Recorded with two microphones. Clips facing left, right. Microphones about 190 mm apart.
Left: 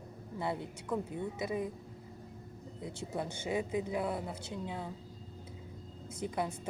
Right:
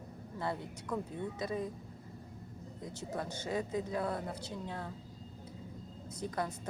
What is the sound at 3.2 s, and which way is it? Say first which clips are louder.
Speech: left 2 dB; 10° left (ahead or behind).